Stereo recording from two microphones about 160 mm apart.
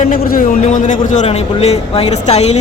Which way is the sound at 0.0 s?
60° left (ahead or behind).